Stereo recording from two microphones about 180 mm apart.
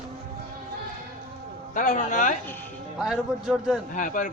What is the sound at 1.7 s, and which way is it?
Speech, 45° left (ahead or behind).